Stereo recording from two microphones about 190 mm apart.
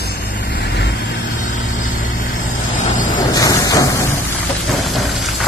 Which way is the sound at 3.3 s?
20° left (ahead or behind).